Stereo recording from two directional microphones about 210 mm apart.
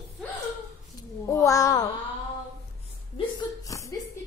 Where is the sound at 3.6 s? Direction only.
15° left (ahead or behind).